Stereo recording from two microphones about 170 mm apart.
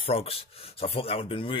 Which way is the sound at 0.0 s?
35° left (ahead or behind).